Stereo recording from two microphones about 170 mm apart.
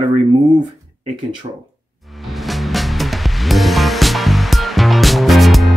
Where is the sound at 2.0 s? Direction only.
Centre (ahead or behind).